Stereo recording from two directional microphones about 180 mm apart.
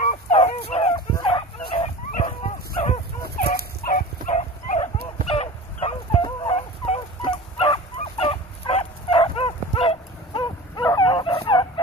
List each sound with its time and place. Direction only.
0.0 s fowl: 40° left (ahead or behind)
2.2 s dog: 25° left (ahead or behind)
3.3 s fowl: 50° left (ahead or behind)
4.3 s dog: 40° left (ahead or behind)